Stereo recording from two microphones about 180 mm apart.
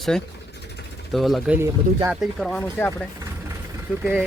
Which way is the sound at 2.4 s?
5° left (ahead or behind).